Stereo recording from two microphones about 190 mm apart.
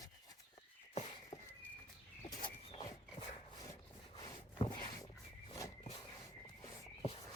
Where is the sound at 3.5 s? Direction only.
20° left (ahead or behind).